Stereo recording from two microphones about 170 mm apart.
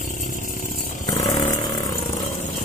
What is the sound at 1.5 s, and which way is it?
Vehicle, 20° left (ahead or behind).